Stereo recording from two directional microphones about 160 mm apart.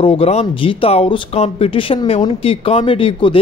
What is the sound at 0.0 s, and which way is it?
Speech, 35° left (ahead or behind).